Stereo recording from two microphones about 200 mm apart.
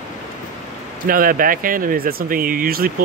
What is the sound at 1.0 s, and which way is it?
Speech, 45° right (ahead or behind).